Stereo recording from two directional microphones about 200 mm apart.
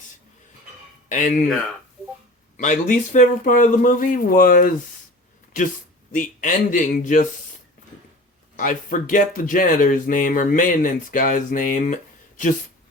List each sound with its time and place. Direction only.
1.1 s speech: 40° left (ahead or behind)
2.6 s speech: 40° left (ahead or behind)
6.1 s speech: 40° left (ahead or behind)
8.5 s speech: 40° left (ahead or behind)